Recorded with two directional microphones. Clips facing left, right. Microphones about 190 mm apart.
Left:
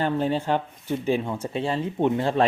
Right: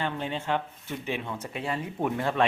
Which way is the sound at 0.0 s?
40° left (ahead or behind).